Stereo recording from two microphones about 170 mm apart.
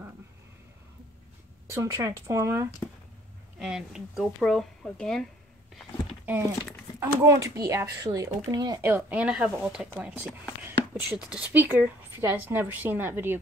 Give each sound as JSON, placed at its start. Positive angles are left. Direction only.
{"t": 1.7, "sound": "a woman's voice", "side_deg": -20}
{"t": 3.5, "sound": "speech", "side_deg": -5}
{"t": 5.8, "sound": "a sound", "side_deg": -10}
{"t": 7.0, "sound": "speech", "side_deg": -15}
{"t": 8.8, "sound": "a woman's voice", "side_deg": -10}